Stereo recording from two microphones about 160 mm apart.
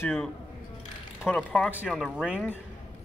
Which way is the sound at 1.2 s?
5° left (ahead or behind).